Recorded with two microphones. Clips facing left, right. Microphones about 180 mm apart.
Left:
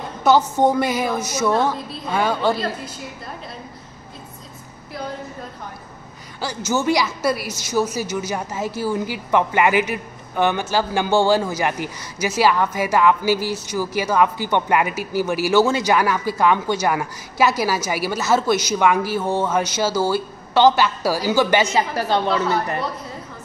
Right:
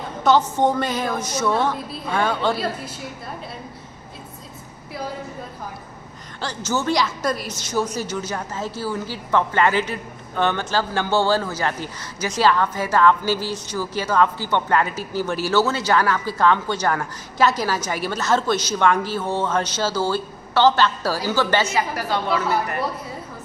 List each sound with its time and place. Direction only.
0.2 s a woman's voice: 10° left (ahead or behind)
2.5 s a woman's voice: 5° right (ahead or behind)
6.4 s a woman's voice: 10° left (ahead or behind)
21.7 s a woman's voice: 25° left (ahead or behind)